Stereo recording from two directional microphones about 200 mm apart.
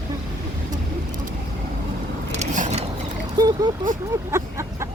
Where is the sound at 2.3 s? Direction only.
35° right (ahead or behind).